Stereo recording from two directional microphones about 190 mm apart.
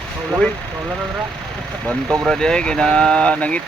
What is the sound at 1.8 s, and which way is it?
Speech, 5° left (ahead or behind).